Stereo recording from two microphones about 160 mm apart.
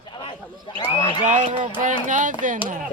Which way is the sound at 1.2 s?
50° right (ahead or behind).